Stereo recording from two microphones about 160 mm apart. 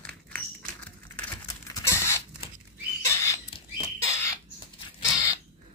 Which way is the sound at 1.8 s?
15° left (ahead or behind).